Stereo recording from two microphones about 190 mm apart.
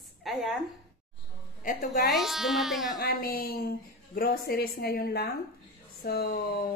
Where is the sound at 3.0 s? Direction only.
50° left (ahead or behind).